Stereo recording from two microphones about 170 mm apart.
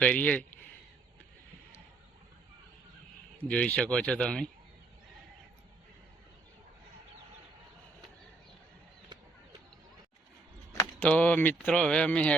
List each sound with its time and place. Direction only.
0.0 s speech: 10° left (ahead or behind)
3.5 s speech: 5° left (ahead or behind)
10.7 s keys jangling: 20° left (ahead or behind)
11.1 s speech: 10° left (ahead or behind)